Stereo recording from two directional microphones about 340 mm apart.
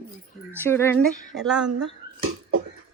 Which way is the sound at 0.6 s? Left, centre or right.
Centre.